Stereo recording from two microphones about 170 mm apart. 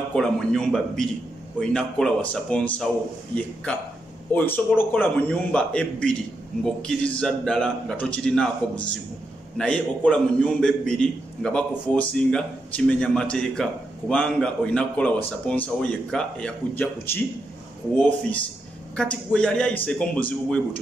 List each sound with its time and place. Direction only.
0.1 s a man's voice: 5° left (ahead or behind)
4.3 s a man's voice: 10° left (ahead or behind)
18.9 s a man's voice: 5° left (ahead or behind)